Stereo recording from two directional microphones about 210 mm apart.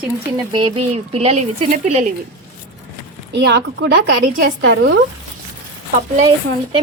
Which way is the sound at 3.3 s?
55° right (ahead or behind).